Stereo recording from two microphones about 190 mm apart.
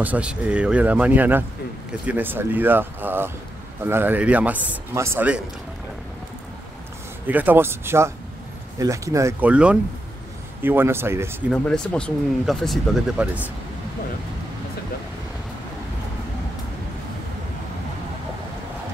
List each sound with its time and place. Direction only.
0.0 s a man's voice: 5° right (ahead or behind)
7.2 s a man's voice: 10° right (ahead or behind)
11.5 s speech: 5° left (ahead or behind)